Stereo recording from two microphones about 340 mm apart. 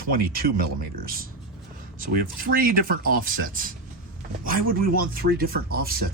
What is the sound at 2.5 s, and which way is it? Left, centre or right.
Speech, right.